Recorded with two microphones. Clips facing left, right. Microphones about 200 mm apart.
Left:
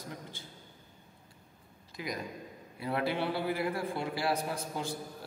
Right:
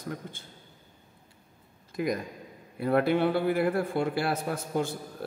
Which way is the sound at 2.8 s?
55° right (ahead or behind).